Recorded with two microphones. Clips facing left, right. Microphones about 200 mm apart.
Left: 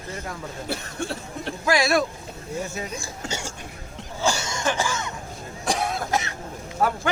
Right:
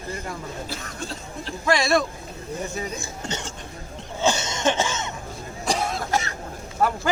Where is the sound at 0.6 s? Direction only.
65° left (ahead or behind).